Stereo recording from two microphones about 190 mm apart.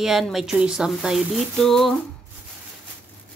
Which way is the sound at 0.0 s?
Centre (ahead or behind).